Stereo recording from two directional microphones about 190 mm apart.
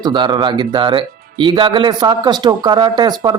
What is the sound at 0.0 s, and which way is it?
Speech, 25° right (ahead or behind).